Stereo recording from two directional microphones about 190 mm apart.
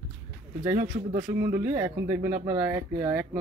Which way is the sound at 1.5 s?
20° right (ahead or behind).